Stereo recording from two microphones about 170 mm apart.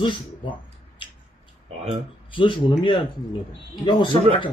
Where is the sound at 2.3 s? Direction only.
30° left (ahead or behind).